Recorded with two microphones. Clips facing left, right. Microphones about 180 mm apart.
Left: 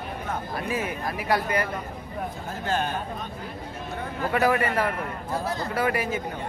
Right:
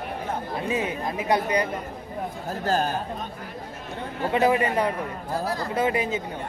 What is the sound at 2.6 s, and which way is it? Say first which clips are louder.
Speech: right 3 dB; 35° right (ahead or behind).